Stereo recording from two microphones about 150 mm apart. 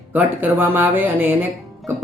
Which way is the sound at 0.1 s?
15° right (ahead or behind).